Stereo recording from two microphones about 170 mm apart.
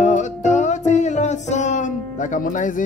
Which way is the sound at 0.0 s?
45° left (ahead or behind).